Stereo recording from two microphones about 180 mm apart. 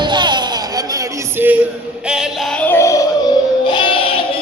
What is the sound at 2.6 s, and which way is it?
Music, 15° left (ahead or behind).